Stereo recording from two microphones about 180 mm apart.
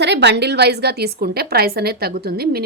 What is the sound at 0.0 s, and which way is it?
A woman's voice, 70° right (ahead or behind).